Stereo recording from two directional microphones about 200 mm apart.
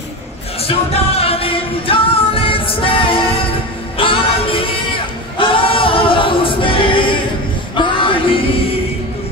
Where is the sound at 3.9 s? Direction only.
25° left (ahead or behind).